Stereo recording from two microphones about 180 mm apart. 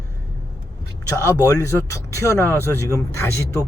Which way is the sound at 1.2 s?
15° left (ahead or behind).